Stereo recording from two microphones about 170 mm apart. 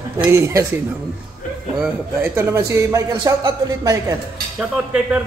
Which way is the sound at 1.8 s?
15° right (ahead or behind).